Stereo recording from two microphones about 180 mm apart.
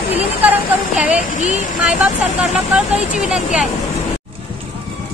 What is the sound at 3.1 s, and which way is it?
Speech, 5° right (ahead or behind).